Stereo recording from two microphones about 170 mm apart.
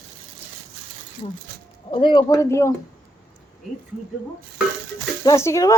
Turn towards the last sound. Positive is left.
turn(degrees=15)  # may be behind; listen again after turning